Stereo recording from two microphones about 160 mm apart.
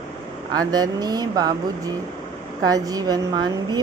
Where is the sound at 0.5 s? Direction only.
25° right (ahead or behind).